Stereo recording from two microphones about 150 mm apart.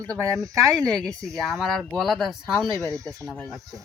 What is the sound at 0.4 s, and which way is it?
Speech, 20° right (ahead or behind).